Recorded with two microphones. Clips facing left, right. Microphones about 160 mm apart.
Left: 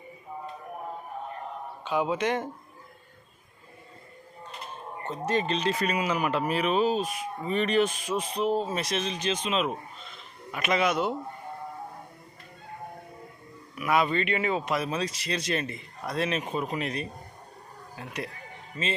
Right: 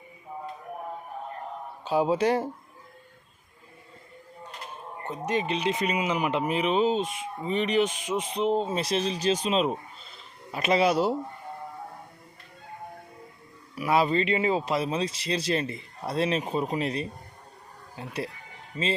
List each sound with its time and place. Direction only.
1.8 s speech: 35° right (ahead or behind)
5.0 s speech: 10° right (ahead or behind); by 11.1 s 35° right (ahead or behind)
13.7 s speech: 30° right (ahead or behind)